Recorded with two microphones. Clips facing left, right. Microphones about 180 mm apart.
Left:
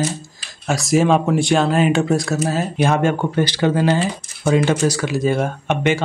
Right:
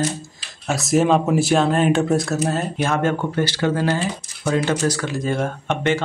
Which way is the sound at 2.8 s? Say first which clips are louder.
Left 5 dB; 15° left (ahead or behind).